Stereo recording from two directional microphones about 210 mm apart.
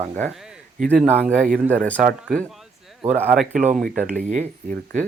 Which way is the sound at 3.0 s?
10° right (ahead or behind).